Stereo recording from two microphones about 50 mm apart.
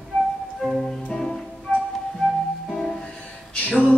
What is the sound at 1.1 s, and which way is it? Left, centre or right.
Music, centre.